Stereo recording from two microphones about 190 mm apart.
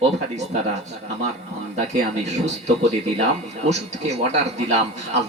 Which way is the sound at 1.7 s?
35° right (ahead or behind).